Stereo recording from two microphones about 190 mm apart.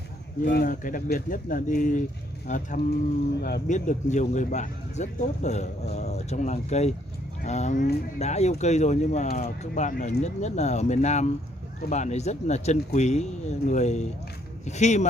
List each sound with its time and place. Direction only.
0.5 s speech: 50° left (ahead or behind)
3.3 s speech: 55° left (ahead or behind); by 15.0 s 35° left (ahead or behind)